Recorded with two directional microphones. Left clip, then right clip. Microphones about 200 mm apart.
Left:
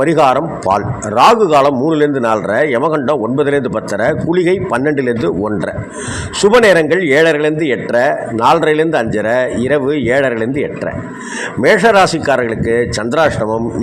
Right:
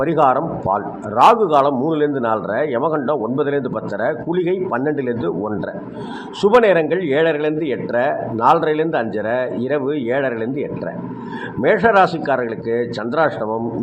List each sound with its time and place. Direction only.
0.0 s a man's voice: 40° left (ahead or behind)